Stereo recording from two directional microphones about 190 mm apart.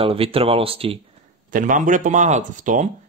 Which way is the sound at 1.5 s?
45° right (ahead or behind).